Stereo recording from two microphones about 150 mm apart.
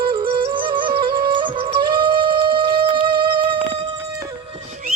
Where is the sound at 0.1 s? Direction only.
35° right (ahead or behind).